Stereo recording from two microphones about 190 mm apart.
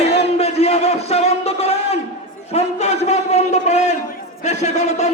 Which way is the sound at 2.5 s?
35° left (ahead or behind).